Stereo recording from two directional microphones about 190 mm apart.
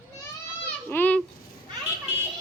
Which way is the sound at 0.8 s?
10° left (ahead or behind).